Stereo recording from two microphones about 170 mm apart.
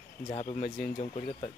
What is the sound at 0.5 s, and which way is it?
Speech, 50° left (ahead or behind).